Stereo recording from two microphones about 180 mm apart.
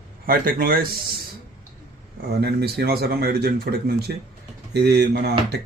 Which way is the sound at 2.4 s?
65° right (ahead or behind).